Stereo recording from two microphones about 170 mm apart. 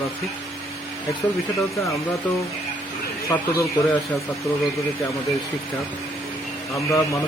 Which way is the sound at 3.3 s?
10° left (ahead or behind).